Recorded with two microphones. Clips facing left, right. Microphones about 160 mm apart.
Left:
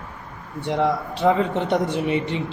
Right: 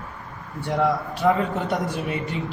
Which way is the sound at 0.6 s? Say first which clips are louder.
Left 1 dB; 25° left (ahead or behind).